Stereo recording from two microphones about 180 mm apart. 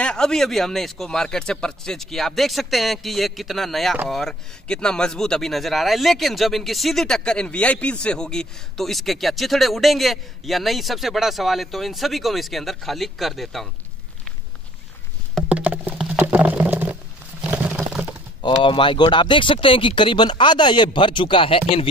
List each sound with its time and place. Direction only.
0.0 s speech: 5° left (ahead or behind)
15.3 s a sound: 5° right (ahead or behind)
18.4 s speech: 25° left (ahead or behind)